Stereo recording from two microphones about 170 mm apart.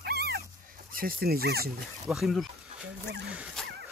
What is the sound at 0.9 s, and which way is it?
Speech, 60° right (ahead or behind).